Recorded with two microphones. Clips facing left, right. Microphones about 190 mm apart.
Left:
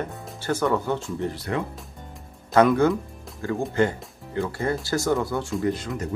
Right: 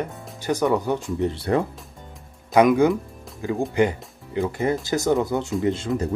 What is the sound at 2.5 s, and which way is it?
Speech, 15° right (ahead or behind).